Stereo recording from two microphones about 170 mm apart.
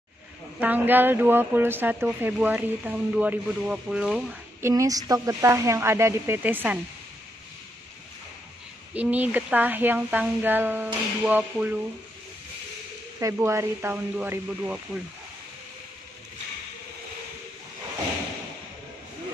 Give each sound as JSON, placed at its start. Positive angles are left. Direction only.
{"t": 0.6, "sound": "speech", "side_deg": -10}
{"t": 8.9, "sound": "speech", "side_deg": -10}
{"t": 13.2, "sound": "speech", "side_deg": -15}